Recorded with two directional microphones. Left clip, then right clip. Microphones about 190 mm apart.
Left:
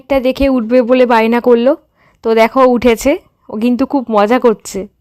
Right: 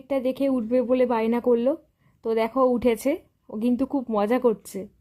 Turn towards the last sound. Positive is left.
turn(degrees=15)  # may be behind; listen again after turning